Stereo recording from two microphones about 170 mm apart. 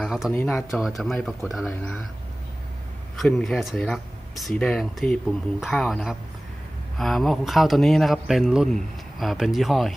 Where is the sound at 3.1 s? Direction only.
Centre (ahead or behind).